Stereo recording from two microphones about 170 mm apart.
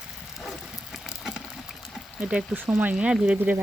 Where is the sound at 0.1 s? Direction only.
Centre (ahead or behind).